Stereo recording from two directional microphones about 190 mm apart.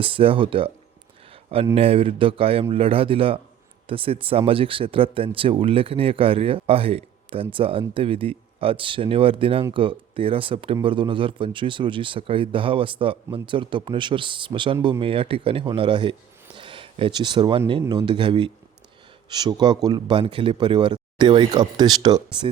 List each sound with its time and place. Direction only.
0.0 s speech: 30° right (ahead or behind)
1.7 s speech: 30° right (ahead or behind)
16.6 s a sound: 25° right (ahead or behind)
17.7 s speech: 25° right (ahead or behind)